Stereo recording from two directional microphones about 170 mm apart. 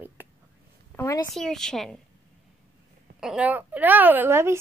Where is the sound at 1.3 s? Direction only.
Centre (ahead or behind).